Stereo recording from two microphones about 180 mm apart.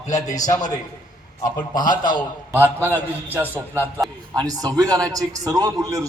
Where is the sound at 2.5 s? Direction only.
10° right (ahead or behind).